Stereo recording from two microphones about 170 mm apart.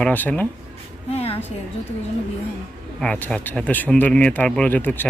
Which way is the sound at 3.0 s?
5° left (ahead or behind).